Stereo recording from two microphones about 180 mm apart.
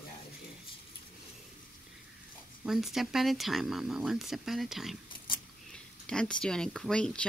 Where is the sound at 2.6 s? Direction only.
Centre (ahead or behind).